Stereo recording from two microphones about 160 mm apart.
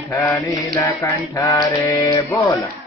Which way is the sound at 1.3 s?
20° left (ahead or behind).